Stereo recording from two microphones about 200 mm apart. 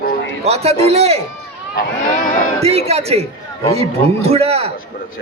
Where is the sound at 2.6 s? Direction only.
30° right (ahead or behind).